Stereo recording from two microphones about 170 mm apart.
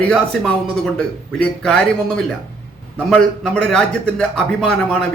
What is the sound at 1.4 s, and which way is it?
Speech, 5° left (ahead or behind).